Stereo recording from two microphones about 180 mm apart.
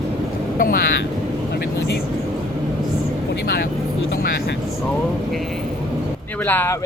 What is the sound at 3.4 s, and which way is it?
Speech, 60° left (ahead or behind).